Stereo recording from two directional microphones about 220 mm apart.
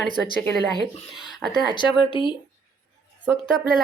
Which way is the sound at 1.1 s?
Centre (ahead or behind).